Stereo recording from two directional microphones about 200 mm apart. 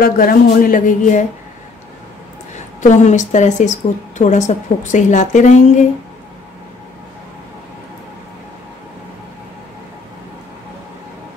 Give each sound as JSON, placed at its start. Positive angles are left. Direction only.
{"t": 0.0, "sound": "speech", "side_deg": 45}
{"t": 2.8, "sound": "a woman's voice", "side_deg": 35}